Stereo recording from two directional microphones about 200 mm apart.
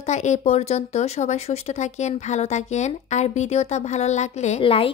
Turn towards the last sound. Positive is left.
turn(degrees=25)  # may be behind; listen again after turning